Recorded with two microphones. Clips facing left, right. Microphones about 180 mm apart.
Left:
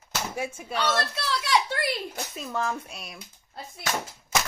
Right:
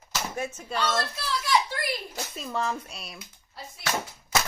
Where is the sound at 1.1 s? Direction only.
70° left (ahead or behind).